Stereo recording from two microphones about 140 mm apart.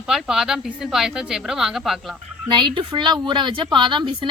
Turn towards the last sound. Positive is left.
turn(degrees=-35)  # may be behind; listen again after turning